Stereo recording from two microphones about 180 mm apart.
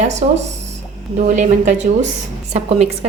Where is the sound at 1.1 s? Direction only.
45° right (ahead or behind).